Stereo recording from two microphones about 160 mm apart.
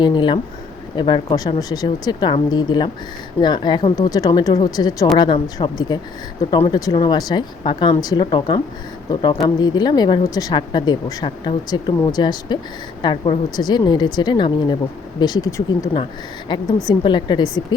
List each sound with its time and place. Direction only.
0.0 s a woman's voice: 30° left (ahead or behind)